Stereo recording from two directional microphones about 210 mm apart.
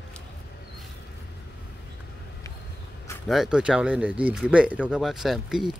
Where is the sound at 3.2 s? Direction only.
Centre (ahead or behind).